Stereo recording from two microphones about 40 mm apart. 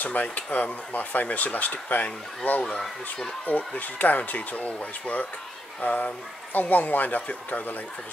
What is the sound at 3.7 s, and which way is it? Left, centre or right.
Speech, left.